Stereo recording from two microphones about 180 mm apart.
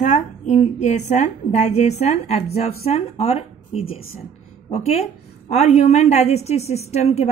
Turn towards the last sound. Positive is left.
turn(degrees=35)  # may be behind; listen again after turning